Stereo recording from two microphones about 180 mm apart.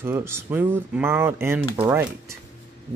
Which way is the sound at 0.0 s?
15° right (ahead or behind).